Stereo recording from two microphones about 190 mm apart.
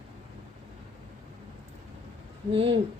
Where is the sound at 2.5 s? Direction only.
30° right (ahead or behind).